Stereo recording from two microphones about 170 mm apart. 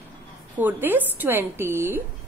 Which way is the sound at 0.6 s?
10° right (ahead or behind).